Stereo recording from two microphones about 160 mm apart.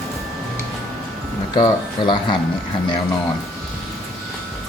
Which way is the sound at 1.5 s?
30° left (ahead or behind).